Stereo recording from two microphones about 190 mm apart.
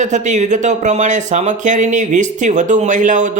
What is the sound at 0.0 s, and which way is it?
Speech, 40° right (ahead or behind).